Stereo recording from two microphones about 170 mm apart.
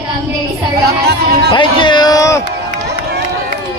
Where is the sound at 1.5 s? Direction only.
25° left (ahead or behind).